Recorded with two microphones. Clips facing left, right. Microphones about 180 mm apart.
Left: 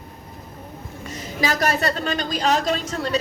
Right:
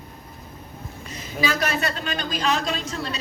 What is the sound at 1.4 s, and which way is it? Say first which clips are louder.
Speech: left 3 dB; 40° left (ahead or behind).